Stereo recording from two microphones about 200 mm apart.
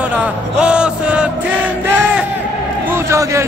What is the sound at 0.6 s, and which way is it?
Music, 5° right (ahead or behind).